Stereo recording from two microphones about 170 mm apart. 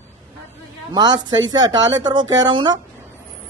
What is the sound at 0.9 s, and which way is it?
Speech, 25° right (ahead or behind).